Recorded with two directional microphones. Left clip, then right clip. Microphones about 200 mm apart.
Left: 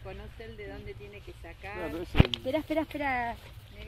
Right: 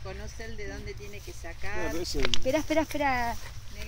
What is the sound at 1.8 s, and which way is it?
Speech, 5° left (ahead or behind).